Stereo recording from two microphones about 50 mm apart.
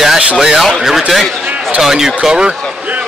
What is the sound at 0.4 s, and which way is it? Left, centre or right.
Speech, centre.